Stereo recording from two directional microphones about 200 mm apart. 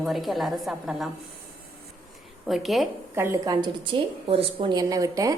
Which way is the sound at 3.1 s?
15° right (ahead or behind).